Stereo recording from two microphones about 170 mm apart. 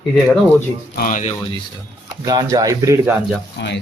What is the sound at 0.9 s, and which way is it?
Speech, 50° left (ahead or behind).